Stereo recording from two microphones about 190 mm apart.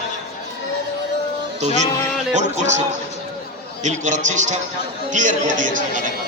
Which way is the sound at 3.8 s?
40° right (ahead or behind).